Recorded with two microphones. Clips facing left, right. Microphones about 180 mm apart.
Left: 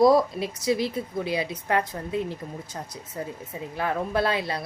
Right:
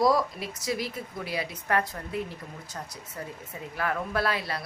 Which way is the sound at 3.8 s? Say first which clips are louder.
Left 3 dB; 25° left (ahead or behind).